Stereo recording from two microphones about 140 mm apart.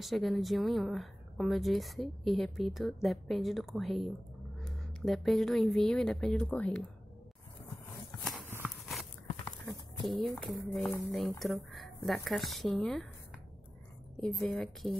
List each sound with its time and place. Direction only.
0.0 s speech: centre (ahead or behind)
8.1 s horse: 20° left (ahead or behind)
8.8 s a sound: centre (ahead or behind)
10.4 s speech: centre (ahead or behind)
14.2 s a woman's voice: 5° left (ahead or behind)